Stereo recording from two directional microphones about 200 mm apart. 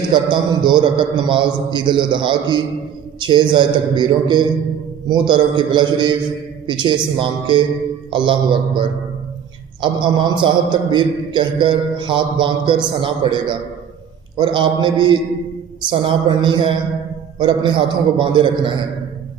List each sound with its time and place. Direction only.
0.1 s a man's voice: 20° right (ahead or behind)